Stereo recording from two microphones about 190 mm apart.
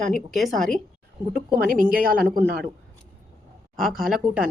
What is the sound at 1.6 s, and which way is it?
A woman's voice, 50° right (ahead or behind).